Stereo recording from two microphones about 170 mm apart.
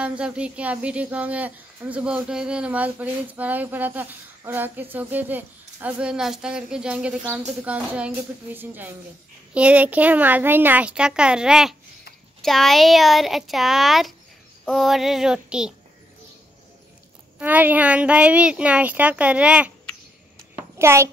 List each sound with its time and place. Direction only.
0.0 s speech: 5° right (ahead or behind)
17.4 s speech: 10° right (ahead or behind)
20.5 s a sound: 15° right (ahead or behind)